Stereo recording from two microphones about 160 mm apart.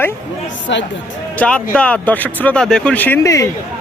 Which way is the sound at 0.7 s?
90° left.